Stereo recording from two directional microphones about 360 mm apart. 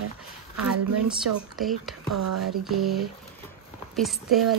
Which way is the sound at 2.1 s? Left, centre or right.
Right.